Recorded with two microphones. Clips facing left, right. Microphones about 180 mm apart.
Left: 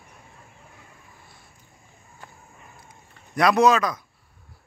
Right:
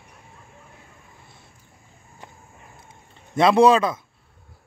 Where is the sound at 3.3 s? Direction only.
25° right (ahead or behind).